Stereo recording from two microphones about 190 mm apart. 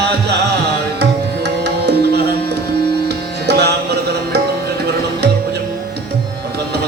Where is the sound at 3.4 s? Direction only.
60° right (ahead or behind).